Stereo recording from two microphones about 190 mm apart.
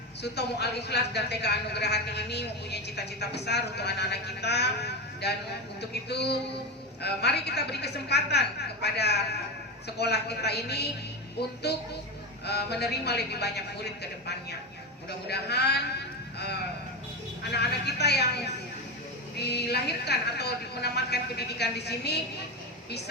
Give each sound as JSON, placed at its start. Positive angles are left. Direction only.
{"t": 0.2, "sound": "a man's voice", "side_deg": 60}
{"t": 15.3, "sound": "a man's voice", "side_deg": 60}
{"t": 17.5, "sound": "a man's voice", "side_deg": 60}